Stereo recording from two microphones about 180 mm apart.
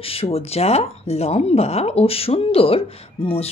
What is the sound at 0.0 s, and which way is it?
Speech, 35° left (ahead or behind).